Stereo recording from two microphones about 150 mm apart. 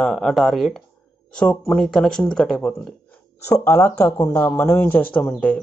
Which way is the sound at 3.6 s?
15° left (ahead or behind).